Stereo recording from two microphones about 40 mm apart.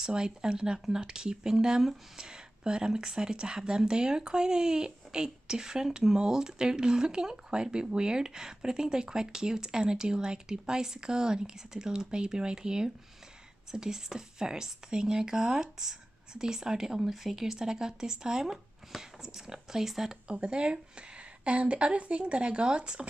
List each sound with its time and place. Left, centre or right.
0.0 s speech: centre
17.0 s speech: centre
20.2 s a woman's voice: right